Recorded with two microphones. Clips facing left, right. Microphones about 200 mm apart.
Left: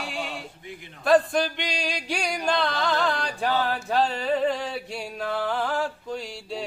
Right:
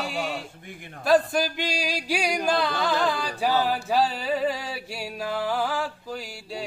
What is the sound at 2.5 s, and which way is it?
Chant, 10° right (ahead or behind).